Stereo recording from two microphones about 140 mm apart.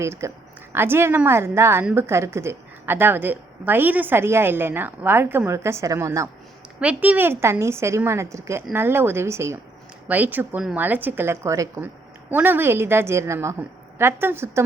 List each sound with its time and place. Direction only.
0.0 s a woman's voice: 20° right (ahead or behind)
6.7 s a woman's voice: 10° right (ahead or behind)